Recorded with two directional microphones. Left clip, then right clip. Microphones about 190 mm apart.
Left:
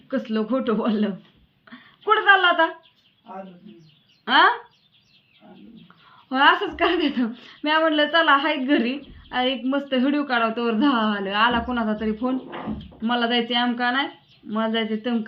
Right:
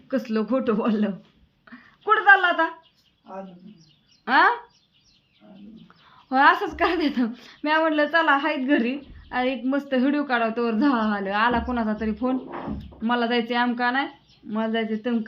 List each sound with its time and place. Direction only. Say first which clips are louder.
0.1 s a woman's voice: even; 20° right (ahead or behind)
4.3 s a woman's voice: left 2 dB; 15° right (ahead or behind)
6.2 s a woman's voice: even; 15° right (ahead or behind)